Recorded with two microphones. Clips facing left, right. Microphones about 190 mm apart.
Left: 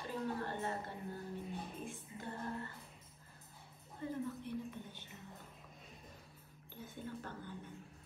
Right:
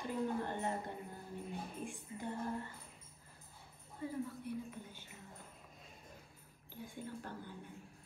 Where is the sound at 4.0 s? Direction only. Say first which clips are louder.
Even; 10° right (ahead or behind).